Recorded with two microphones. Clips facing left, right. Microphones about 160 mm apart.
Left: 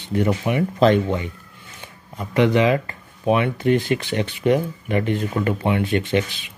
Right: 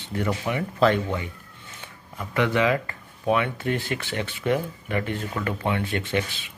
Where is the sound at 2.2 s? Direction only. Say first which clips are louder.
Left 5 dB; 20° left (ahead or behind).